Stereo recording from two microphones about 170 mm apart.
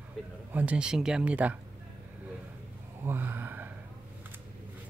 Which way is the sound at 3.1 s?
10° right (ahead or behind).